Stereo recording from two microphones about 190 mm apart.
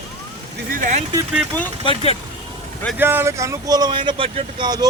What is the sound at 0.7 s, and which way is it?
Speech, 40° right (ahead or behind).